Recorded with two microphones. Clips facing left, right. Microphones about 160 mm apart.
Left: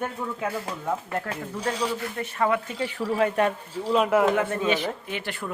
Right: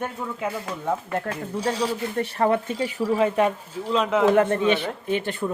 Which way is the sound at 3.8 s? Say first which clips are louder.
Right 1 dB; 10° left (ahead or behind).